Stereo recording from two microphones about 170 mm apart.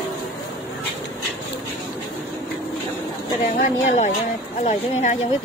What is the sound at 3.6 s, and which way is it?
Speech, 45° left (ahead or behind).